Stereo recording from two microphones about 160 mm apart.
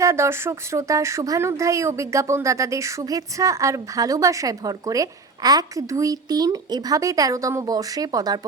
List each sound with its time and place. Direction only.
0.0 s speech: 15° right (ahead or behind)